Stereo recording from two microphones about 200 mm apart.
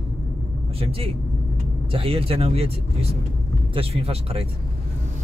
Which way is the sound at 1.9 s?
30° right (ahead or behind).